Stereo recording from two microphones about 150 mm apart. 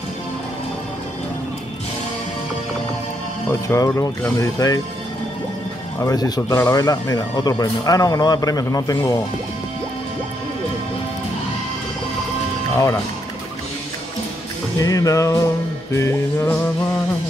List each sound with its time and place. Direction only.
3.4 s speech: 20° left (ahead or behind)
5.9 s speech: 25° left (ahead or behind)
14.8 s speech: 25° left (ahead or behind)
16.0 s music: 15° left (ahead or behind)